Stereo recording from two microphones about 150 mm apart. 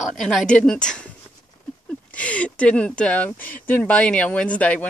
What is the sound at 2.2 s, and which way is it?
Speech, 10° left (ahead or behind).